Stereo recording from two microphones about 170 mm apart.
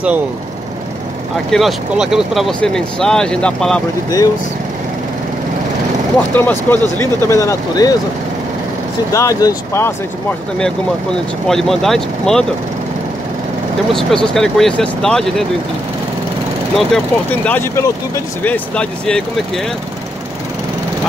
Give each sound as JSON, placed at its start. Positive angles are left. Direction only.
{"t": 1.5, "sound": "speech", "side_deg": 0}
{"t": 6.3, "sound": "speech", "side_deg": 10}
{"t": 9.1, "sound": "speech", "side_deg": 20}
{"t": 11.4, "sound": "speech", "side_deg": 0}
{"t": 13.9, "sound": "speech", "side_deg": 0}
{"t": 16.7, "sound": "speech", "side_deg": 5}